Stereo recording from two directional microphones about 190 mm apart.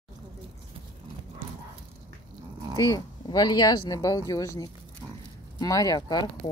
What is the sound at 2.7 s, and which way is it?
Speech, 20° left (ahead or behind).